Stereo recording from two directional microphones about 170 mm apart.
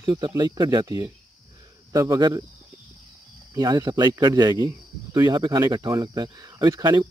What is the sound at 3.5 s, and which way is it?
Speech, 20° right (ahead or behind).